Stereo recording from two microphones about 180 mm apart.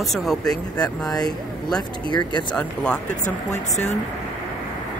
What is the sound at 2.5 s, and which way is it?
Speech, 5° left (ahead or behind).